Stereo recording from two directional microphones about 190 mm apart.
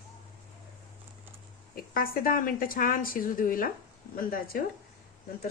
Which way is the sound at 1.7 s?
50° left (ahead or behind).